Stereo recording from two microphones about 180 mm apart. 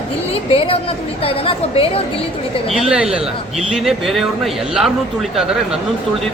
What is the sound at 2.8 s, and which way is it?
A man's voice, 5° right (ahead or behind).